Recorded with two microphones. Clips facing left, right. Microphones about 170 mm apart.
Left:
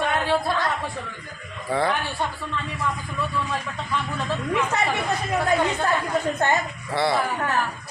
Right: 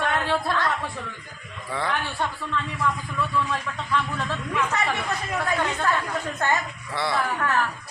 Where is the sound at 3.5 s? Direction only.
10° left (ahead or behind).